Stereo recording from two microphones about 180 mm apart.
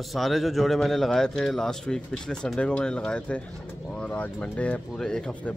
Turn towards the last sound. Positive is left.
turn(degrees=5)  # may be behind; listen again after turning